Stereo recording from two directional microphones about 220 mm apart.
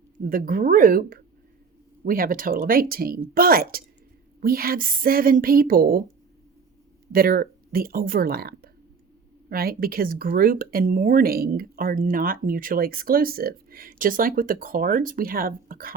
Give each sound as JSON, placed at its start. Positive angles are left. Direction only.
{"t": 0.2, "sound": "speech", "side_deg": -40}
{"t": 7.1, "sound": "speech", "side_deg": -40}